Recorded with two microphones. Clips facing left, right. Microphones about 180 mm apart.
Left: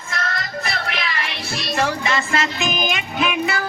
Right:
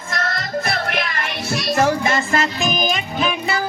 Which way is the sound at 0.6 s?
55° right (ahead or behind).